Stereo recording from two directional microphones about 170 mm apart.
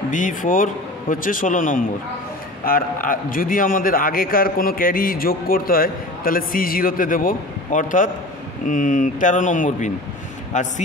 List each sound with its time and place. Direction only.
0.1 s a man's voice: 50° left (ahead or behind)